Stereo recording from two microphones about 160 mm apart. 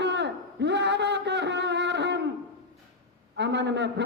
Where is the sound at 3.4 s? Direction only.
90° right.